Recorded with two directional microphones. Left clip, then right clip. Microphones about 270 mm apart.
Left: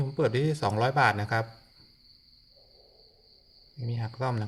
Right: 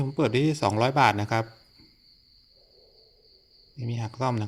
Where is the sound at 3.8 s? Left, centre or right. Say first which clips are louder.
Right 4 dB; right.